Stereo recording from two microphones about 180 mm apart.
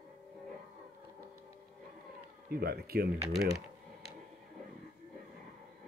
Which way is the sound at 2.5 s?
60° right (ahead or behind).